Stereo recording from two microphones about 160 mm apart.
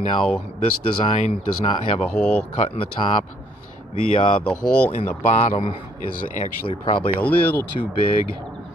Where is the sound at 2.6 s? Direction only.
35° left (ahead or behind).